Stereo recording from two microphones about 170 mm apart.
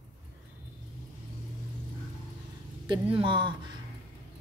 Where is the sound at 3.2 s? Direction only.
30° right (ahead or behind).